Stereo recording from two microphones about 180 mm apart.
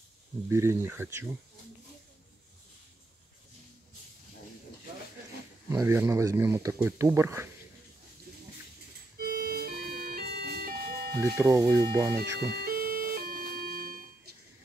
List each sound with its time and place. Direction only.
0.5 s speech: 15° right (ahead or behind)
5.7 s speech: 15° right (ahead or behind)
9.2 s music: 55° right (ahead or behind)
11.3 s speech: 20° right (ahead or behind)
12.6 s music: 55° right (ahead or behind)